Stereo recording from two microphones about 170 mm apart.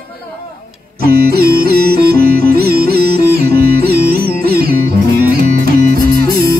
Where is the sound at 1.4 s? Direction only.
65° right (ahead or behind).